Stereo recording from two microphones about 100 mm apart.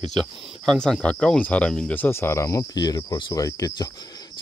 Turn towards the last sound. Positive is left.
turn(degrees=35)  # may be behind; listen again after turning